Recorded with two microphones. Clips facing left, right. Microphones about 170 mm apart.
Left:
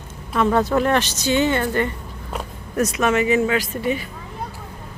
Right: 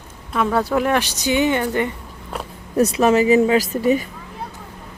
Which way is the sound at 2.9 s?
35° right (ahead or behind).